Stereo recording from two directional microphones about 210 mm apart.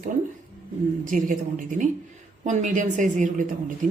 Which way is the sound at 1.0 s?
40° right (ahead or behind).